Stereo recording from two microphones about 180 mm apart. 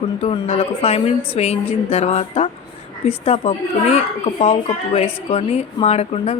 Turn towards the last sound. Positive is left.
turn(degrees=35)  # may be behind; listen again after turning